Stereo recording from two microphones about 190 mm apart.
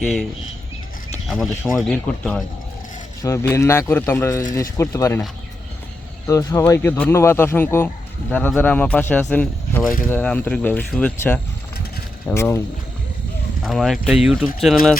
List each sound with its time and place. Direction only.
0.0 s speech: 5° left (ahead or behind)
1.3 s speech: centre (ahead or behind)
6.2 s speech: 15° left (ahead or behind)
13.7 s speech: centre (ahead or behind)